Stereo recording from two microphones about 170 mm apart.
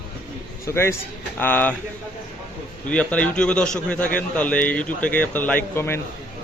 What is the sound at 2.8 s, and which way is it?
A man's voice, 5° left (ahead or behind).